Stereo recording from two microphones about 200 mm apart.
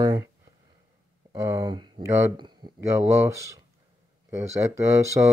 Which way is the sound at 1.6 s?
20° right (ahead or behind).